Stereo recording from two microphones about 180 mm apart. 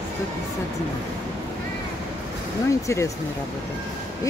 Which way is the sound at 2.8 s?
15° left (ahead or behind).